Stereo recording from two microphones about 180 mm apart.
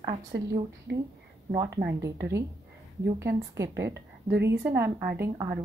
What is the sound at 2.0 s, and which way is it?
Speech, 15° right (ahead or behind).